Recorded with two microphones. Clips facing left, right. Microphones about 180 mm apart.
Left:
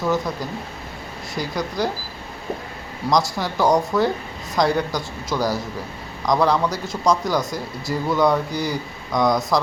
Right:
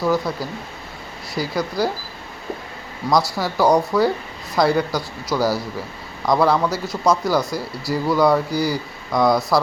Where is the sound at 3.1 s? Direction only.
5° right (ahead or behind).